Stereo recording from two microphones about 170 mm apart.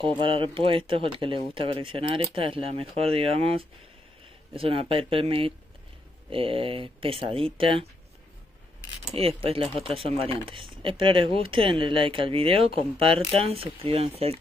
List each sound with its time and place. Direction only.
0.0 s speech: 30° right (ahead or behind)
9.1 s speech: 35° right (ahead or behind)